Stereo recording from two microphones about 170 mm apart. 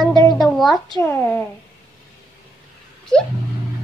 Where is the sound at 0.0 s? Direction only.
25° left (ahead or behind).